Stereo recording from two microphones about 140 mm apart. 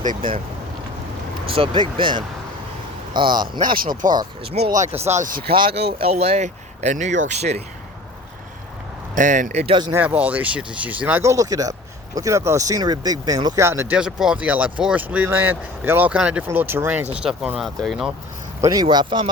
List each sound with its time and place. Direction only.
0.0 s speech: 70° right (ahead or behind)
1.5 s a man's voice: 40° right (ahead or behind)
3.6 s speech: 85° right
4.7 s speech: 55° right (ahead or behind)
5.3 s speech: 90° right
6.1 s speech: 50° right (ahead or behind)
9.1 s speech: 70° right (ahead or behind)
9.9 s speech: 10° right (ahead or behind)
13.9 s speech: 5° right (ahead or behind)
17.6 s speech: centre (ahead or behind)
18.6 s speech: 25° right (ahead or behind)